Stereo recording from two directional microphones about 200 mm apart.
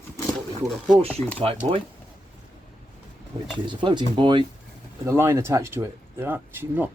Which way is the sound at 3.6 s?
25° right (ahead or behind).